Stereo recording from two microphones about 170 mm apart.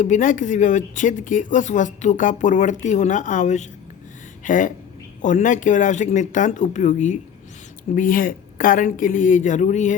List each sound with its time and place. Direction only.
0.0 s speech: 50° left (ahead or behind)